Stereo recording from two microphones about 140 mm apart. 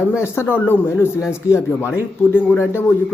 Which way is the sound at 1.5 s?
20° left (ahead or behind).